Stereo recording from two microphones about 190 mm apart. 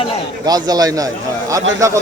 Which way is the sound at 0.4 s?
20° right (ahead or behind).